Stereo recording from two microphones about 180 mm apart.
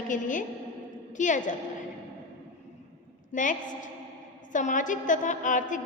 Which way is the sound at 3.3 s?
45° left (ahead or behind).